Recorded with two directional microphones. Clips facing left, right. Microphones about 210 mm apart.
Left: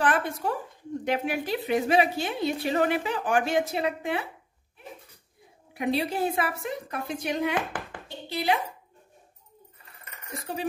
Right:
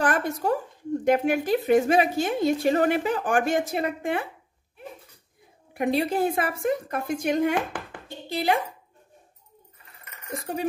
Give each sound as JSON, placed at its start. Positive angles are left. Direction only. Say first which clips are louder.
{"t": 0.0, "sound": "a sound", "louder": "right 2 dB", "side_deg": -45}
{"t": 1.0, "sound": "a woman's voice", "louder": "right 6 dB", "side_deg": -45}
{"t": 5.8, "sound": "a woman's voice", "louder": "right 3 dB", "side_deg": -50}